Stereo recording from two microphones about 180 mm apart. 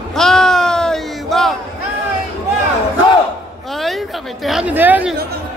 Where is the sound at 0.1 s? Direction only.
Centre (ahead or behind).